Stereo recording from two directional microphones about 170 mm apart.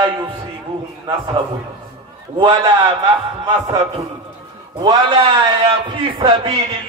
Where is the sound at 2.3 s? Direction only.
30° right (ahead or behind).